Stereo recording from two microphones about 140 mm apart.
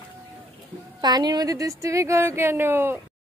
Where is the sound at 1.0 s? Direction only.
30° right (ahead or behind).